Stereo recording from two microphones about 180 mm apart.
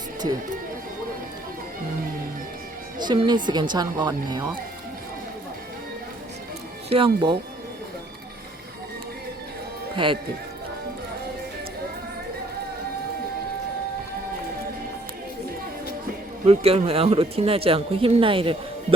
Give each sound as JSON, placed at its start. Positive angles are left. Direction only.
{"t": 3.0, "sound": "a woman's voice", "side_deg": -25}
{"t": 6.9, "sound": "a woman's voice", "side_deg": -25}
{"t": 9.9, "sound": "speech", "side_deg": -25}
{"t": 16.5, "sound": "speech", "side_deg": -35}